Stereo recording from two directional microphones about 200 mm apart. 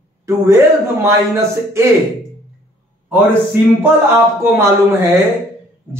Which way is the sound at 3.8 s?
10° right (ahead or behind).